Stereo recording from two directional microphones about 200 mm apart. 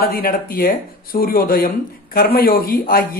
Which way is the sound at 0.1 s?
45° left (ahead or behind).